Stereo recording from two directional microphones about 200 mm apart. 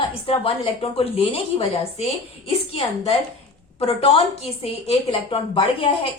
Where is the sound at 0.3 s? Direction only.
30° left (ahead or behind).